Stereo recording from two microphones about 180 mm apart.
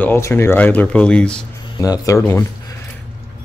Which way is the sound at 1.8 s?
20° left (ahead or behind).